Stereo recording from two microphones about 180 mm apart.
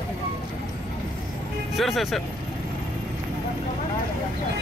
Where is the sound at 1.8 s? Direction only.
Centre (ahead or behind).